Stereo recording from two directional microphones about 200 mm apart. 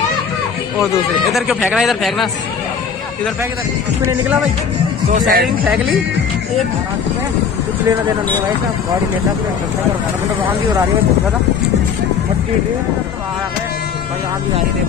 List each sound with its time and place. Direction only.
1.3 s speech: centre (ahead or behind)
5.0 s speech: 40° right (ahead or behind)